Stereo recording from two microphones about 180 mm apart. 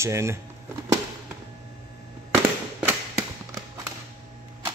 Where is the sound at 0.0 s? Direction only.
15° right (ahead or behind).